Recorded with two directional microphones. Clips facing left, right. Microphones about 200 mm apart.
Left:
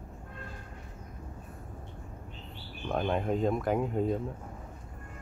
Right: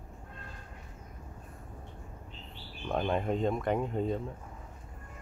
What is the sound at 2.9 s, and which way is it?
Speech, centre (ahead or behind).